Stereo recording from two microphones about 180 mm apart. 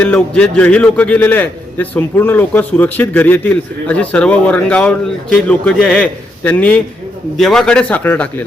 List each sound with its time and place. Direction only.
0.0 s a man's voice: 5° left (ahead or behind)